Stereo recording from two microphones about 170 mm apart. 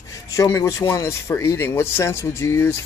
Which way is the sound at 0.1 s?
20° left (ahead or behind).